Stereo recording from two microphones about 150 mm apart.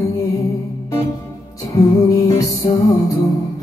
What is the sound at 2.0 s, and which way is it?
Music, 25° left (ahead or behind).